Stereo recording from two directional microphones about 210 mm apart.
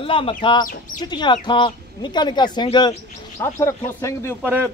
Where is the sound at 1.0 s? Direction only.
20° left (ahead or behind).